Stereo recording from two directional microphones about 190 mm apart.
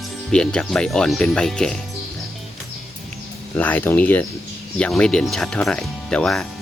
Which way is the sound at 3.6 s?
10° left (ahead or behind).